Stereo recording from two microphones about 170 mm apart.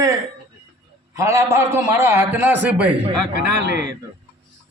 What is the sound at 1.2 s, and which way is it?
A man's voice, 15° right (ahead or behind).